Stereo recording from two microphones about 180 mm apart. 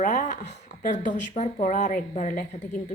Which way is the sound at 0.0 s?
45° left (ahead or behind).